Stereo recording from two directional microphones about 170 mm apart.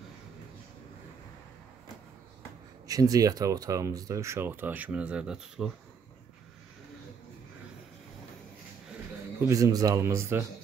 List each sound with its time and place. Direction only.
2.9 s speech: 20° right (ahead or behind); by 5.7 s 5° right (ahead or behind)
9.4 s speech: 20° right (ahead or behind)